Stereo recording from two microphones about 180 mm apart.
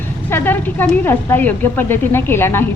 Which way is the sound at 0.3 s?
10° left (ahead or behind).